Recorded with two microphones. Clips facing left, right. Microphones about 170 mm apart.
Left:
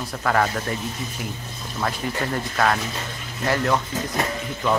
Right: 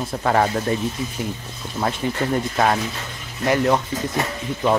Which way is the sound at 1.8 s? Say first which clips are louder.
Right 3 dB; 20° right (ahead or behind).